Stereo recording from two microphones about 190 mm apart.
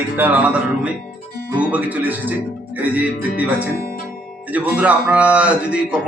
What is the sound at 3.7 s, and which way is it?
Music, 50° left (ahead or behind).